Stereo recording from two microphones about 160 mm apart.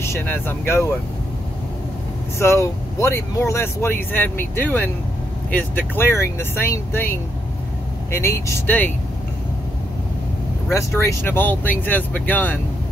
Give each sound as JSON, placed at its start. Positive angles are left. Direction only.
{"t": 0.0, "sound": "speech", "side_deg": 15}
{"t": 2.3, "sound": "speech", "side_deg": 15}
{"t": 10.7, "sound": "speech", "side_deg": 15}